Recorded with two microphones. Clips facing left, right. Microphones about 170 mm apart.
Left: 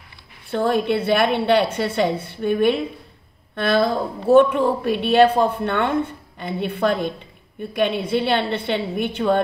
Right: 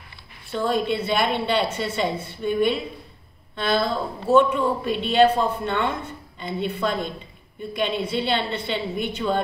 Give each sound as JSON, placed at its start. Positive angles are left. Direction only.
{"t": 0.5, "sound": "a woman's voice", "side_deg": 60}